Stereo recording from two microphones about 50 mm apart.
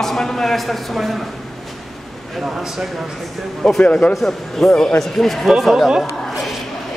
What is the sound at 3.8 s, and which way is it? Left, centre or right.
Speech, left.